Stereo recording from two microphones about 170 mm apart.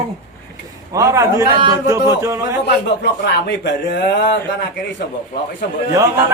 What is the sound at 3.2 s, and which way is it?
A man's voice, 85° left.